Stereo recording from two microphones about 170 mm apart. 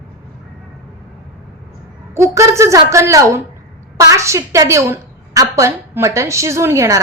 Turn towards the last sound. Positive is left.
turn(degrees=-15)  # may be behind; listen again after turning